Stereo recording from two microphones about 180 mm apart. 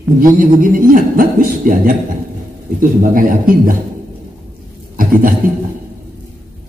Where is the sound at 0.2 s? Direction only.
50° right (ahead or behind).